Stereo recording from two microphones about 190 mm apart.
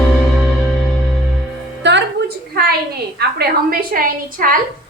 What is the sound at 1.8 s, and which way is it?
Music, 70° right (ahead or behind).